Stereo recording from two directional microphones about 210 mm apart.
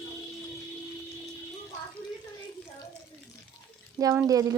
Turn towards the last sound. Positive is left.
turn(degrees=-15)  # may be behind; listen again after turning